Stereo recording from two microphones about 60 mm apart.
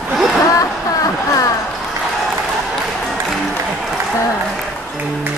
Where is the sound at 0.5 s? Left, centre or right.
Left.